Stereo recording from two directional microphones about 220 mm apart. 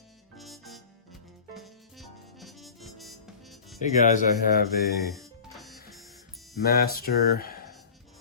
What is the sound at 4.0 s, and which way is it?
Speech, 35° left (ahead or behind).